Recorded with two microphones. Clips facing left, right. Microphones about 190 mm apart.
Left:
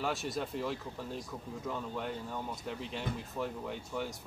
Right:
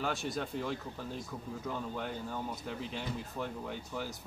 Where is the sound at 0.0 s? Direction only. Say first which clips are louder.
Even; centre (ahead or behind).